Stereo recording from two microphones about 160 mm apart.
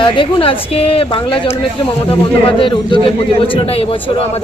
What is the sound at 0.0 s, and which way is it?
A man's voice, 35° left (ahead or behind).